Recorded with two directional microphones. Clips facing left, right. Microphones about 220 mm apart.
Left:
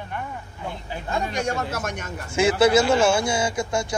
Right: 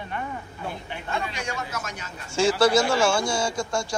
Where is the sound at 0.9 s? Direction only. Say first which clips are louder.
Left 7 dB; 45° left (ahead or behind).